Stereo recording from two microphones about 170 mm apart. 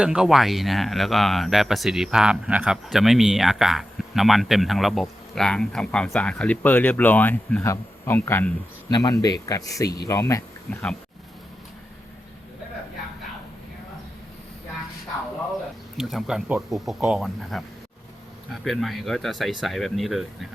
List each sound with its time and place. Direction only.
0.0 s speech: 5° right (ahead or behind); by 10.8 s 20° left (ahead or behind)
16.0 s speech: centre (ahead or behind)
18.6 s speech: centre (ahead or behind)